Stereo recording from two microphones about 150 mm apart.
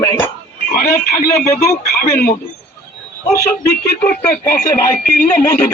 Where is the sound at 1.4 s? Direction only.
20° left (ahead or behind).